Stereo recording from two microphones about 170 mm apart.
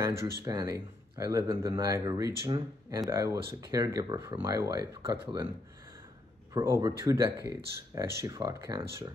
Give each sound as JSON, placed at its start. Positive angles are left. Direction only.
{"t": 0.5, "sound": "speech", "side_deg": -20}
{"t": 6.5, "sound": "speech", "side_deg": -20}